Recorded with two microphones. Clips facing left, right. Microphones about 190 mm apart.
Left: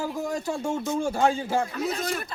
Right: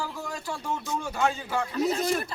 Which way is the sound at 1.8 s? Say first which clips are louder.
Right 3 dB; 35° right (ahead or behind).